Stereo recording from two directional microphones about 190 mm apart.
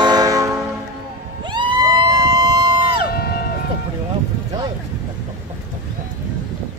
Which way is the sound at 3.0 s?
55° left (ahead or behind).